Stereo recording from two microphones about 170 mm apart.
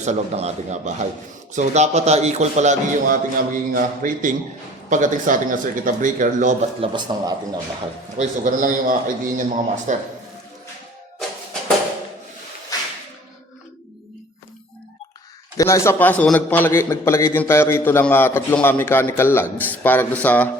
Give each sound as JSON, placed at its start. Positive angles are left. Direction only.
{"t": 0.0, "sound": "a man's voice", "side_deg": -40}
{"t": 6.9, "sound": "speech", "side_deg": -25}
{"t": 8.2, "sound": "a man's voice", "side_deg": -50}
{"t": 12.7, "sound": "whip", "side_deg": 20}
{"t": 15.5, "sound": "a man's voice", "side_deg": 20}